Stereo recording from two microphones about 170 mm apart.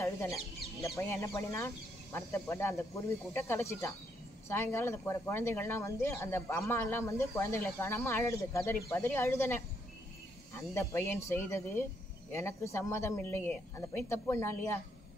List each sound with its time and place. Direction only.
0.0 s speech: 15° left (ahead or behind)